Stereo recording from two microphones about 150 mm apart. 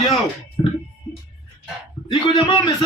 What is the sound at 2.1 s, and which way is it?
Speech, 35° left (ahead or behind).